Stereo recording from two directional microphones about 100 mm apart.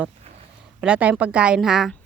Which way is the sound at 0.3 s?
90° right.